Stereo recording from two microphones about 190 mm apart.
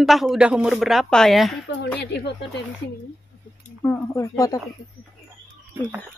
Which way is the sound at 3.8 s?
15° left (ahead or behind).